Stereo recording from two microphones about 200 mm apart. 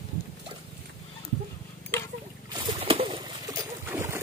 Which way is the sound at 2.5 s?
25° right (ahead or behind).